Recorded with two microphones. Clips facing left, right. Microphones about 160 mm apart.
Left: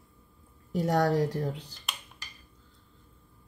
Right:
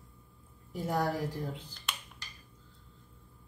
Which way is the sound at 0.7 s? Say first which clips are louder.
Left 7 dB; 80° left.